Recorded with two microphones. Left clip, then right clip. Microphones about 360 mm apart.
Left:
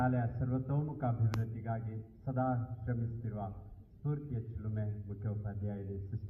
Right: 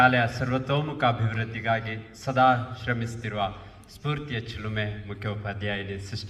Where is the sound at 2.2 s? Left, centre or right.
Right.